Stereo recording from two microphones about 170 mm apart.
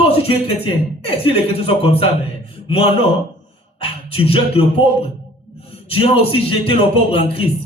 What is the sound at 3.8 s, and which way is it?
Music, 35° left (ahead or behind).